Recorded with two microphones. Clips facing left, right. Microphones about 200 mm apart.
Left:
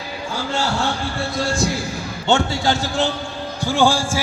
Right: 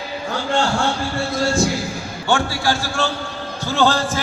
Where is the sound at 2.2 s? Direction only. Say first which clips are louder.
Left 1 dB; 20° left (ahead or behind).